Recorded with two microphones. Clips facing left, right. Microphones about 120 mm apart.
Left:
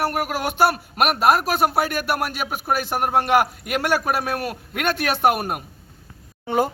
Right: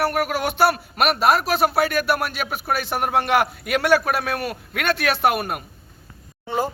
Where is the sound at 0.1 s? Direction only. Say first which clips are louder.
Right 2 dB; 10° left (ahead or behind).